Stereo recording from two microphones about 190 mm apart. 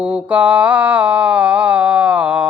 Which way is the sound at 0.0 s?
5° right (ahead or behind).